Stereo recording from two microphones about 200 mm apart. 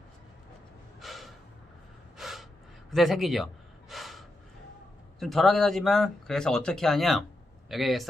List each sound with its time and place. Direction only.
0.9 s gasp: centre (ahead or behind)
5.2 s speech: centre (ahead or behind)